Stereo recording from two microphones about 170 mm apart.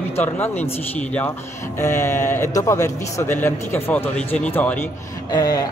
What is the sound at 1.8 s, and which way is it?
A man's voice, 15° left (ahead or behind).